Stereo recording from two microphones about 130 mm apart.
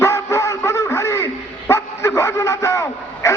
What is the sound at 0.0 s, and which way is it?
Dog, 20° left (ahead or behind).